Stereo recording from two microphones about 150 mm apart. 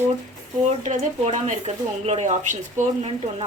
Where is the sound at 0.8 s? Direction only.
50° right (ahead or behind).